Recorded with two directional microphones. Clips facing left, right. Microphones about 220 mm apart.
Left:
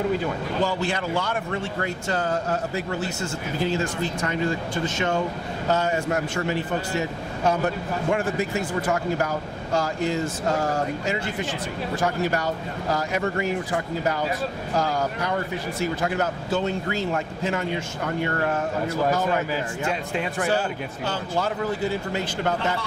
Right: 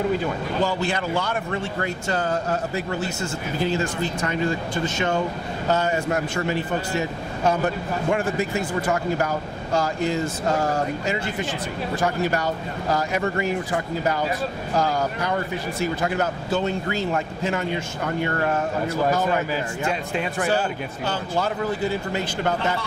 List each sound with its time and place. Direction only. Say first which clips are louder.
0.2 s speech: right 1 dB; 15° right (ahead or behind)
3.8 s speech: right 1 dB; 20° right (ahead or behind)
4.8 s speech: right 1 dB; 10° right (ahead or behind)
10.4 s speech: right 2 dB; 20° right (ahead or behind)
16.8 s speech: right 1 dB; 20° right (ahead or behind)